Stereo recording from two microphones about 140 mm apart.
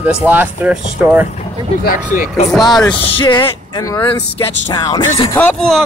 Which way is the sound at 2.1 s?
65° left (ahead or behind).